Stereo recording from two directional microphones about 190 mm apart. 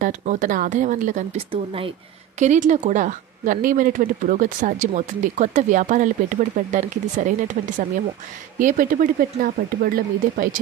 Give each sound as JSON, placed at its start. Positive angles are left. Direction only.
{"t": 0.0, "sound": "speech", "side_deg": -45}
{"t": 1.5, "sound": "speech", "side_deg": -30}
{"t": 2.3, "sound": "speech", "side_deg": -40}
{"t": 8.5, "sound": "speech", "side_deg": -45}